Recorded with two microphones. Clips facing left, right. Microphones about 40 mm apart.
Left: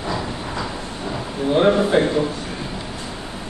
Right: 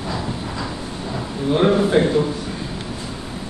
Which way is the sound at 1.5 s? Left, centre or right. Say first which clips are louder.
Even; centre.